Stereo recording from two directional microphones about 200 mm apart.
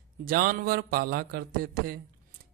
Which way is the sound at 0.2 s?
45° right (ahead or behind).